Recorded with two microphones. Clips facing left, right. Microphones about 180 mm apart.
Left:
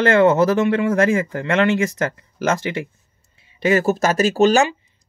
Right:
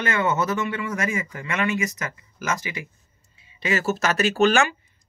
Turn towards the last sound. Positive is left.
turn(degrees=35)  # may be behind; listen again after turning